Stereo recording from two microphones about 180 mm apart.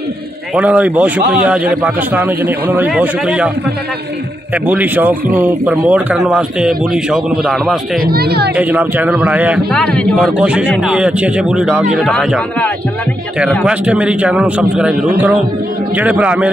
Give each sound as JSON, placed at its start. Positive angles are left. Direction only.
{"t": 0.6, "sound": "a man's voice", "side_deg": -5}
{"t": 4.6, "sound": "speech", "side_deg": -10}
{"t": 8.0, "sound": "speech", "side_deg": -60}
{"t": 8.5, "sound": "a man's voice", "side_deg": -10}
{"t": 9.7, "sound": "speech", "side_deg": 5}
{"t": 10.3, "sound": "a man's voice", "side_deg": -5}